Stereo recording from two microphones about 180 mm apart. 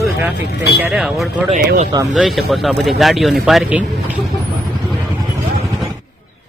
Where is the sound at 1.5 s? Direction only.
45° right (ahead or behind).